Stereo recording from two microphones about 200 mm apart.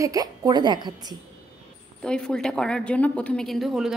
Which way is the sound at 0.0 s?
15° right (ahead or behind).